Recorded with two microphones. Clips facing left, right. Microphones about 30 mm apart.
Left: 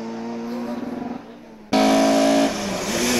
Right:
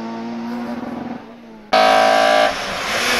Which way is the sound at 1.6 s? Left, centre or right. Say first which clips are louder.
Right 4 dB; right.